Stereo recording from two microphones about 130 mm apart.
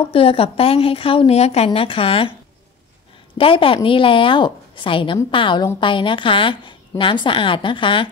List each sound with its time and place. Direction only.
0.0 s a woman's voice: 45° left (ahead or behind)
3.3 s a woman's voice: 45° left (ahead or behind)